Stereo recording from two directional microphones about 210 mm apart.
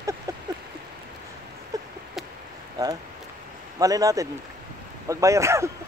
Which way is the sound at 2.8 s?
15° right (ahead or behind).